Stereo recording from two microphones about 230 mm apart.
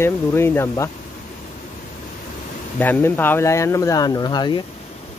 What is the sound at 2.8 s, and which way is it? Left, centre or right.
Speech, centre.